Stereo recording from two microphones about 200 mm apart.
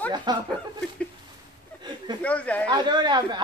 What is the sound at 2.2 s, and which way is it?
Speech, 5° left (ahead or behind).